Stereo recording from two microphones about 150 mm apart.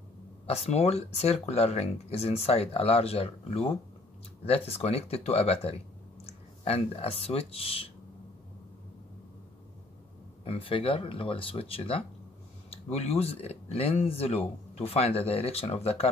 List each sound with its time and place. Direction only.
0.5 s speech: 45° left (ahead or behind)
10.4 s speech: 40° left (ahead or behind)